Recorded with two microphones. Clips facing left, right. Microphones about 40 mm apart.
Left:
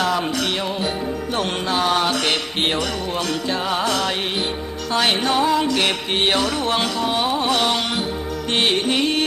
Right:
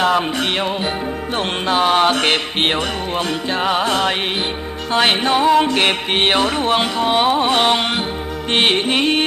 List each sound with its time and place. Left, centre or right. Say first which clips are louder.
0.0 s music: right 4 dB; right